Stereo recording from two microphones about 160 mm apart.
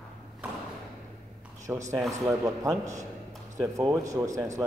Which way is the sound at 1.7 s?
10° right (ahead or behind).